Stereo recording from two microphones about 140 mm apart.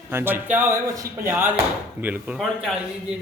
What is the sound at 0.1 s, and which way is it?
Speech, 15° right (ahead or behind).